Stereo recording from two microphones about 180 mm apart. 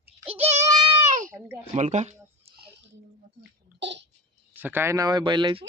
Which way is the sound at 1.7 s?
40° right (ahead or behind).